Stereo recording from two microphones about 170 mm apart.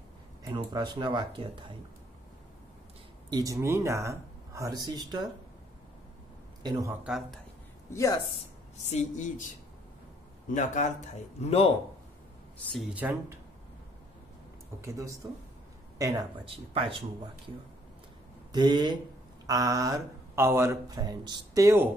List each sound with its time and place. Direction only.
0.7 s speech: 25° right (ahead or behind)
3.3 s speech: 20° right (ahead or behind)
6.6 s speech: 20° right (ahead or behind)
7.1 s speech: centre (ahead or behind)
7.9 s a woman's voice: 20° left (ahead or behind)
8.8 s speech: 45° left (ahead or behind)
10.5 s speech: 45° left (ahead or behind)
12.9 s speech: 10° right (ahead or behind)
14.8 s speech: 20° right (ahead or behind)
16.4 s speech: 35° right (ahead or behind)
18.5 s speech: 25° right (ahead or behind)